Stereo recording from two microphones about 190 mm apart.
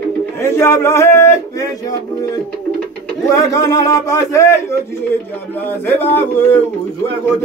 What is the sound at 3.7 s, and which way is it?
Speech, 15° left (ahead or behind).